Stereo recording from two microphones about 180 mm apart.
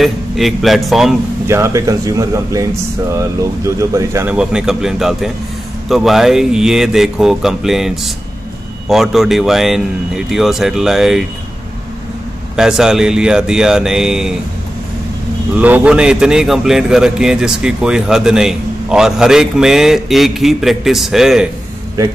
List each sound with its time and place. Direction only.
0.0 s a man's voice: centre (ahead or behind)
1.5 s a man's voice: 15° right (ahead or behind)
12.5 s a man's voice: 5° right (ahead or behind)
15.5 s a man's voice: 10° right (ahead or behind)